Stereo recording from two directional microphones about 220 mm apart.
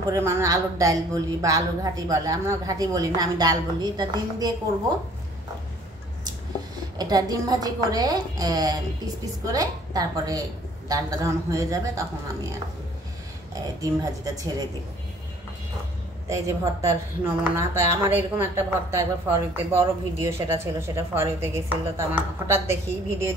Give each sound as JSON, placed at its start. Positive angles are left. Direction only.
{"t": 0.1, "sound": "a woman's voice", "side_deg": -15}
{"t": 7.0, "sound": "a woman's voice", "side_deg": -15}
{"t": 13.7, "sound": "a woman's voice", "side_deg": -15}
{"t": 16.3, "sound": "a woman's voice", "side_deg": -15}